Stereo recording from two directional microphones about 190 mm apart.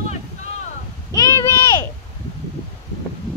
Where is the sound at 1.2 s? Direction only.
20° left (ahead or behind).